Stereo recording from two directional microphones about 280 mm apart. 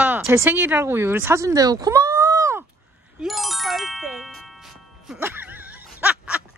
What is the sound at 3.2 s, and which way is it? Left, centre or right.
Music, centre.